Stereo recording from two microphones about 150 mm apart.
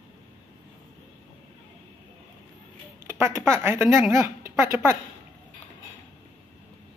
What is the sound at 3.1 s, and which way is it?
A woman's voice, 15° right (ahead or behind).